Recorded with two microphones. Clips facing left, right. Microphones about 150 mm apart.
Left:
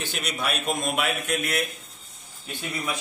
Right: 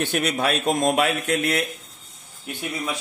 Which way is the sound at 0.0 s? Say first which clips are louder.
Right 8 dB; 60° right (ahead or behind).